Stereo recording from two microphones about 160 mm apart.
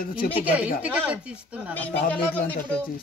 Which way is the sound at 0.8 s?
10° right (ahead or behind).